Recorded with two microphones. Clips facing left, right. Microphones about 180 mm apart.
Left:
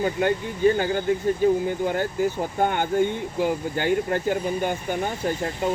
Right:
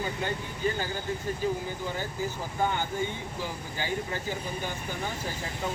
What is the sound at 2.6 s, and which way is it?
Speech, 60° left (ahead or behind).